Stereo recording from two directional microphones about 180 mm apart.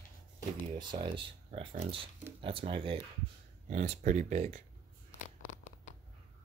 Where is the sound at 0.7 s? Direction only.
25° right (ahead or behind).